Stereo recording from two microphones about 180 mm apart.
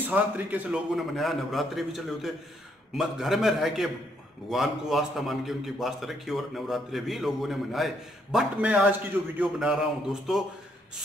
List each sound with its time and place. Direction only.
0.0 s a man's voice: 10° right (ahead or behind)